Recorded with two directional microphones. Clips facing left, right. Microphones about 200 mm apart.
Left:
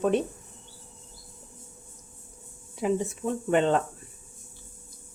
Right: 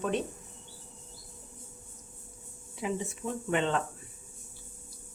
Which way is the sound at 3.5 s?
45° left (ahead or behind).